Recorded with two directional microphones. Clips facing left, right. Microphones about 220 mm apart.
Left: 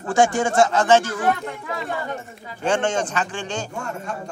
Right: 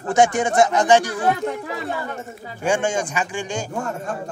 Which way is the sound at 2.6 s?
10° right (ahead or behind).